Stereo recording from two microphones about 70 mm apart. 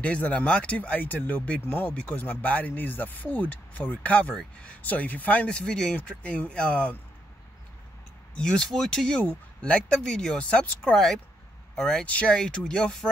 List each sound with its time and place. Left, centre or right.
0.0 s speech: centre
8.4 s speech: centre